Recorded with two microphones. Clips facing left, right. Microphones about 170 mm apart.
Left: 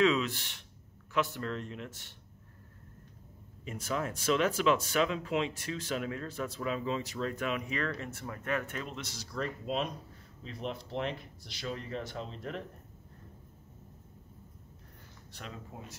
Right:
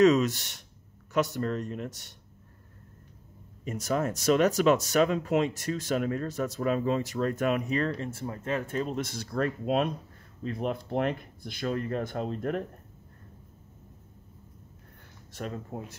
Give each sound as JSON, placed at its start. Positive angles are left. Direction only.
{"t": 0.0, "sound": "speech", "side_deg": -40}
{"t": 3.6, "sound": "speech", "side_deg": -40}
{"t": 8.9, "sound": "speech", "side_deg": -50}
{"t": 15.3, "sound": "speech", "side_deg": -50}